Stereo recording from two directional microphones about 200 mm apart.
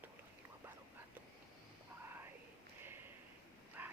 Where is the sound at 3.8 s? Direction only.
10° right (ahead or behind).